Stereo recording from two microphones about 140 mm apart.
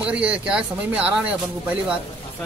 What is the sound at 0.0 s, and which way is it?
A man's voice, 10° right (ahead or behind).